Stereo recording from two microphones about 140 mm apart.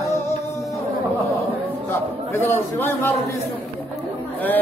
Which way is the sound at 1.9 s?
15° left (ahead or behind).